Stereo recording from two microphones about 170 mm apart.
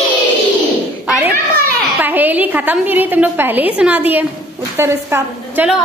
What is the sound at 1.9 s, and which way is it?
A woman's voice, 10° right (ahead or behind).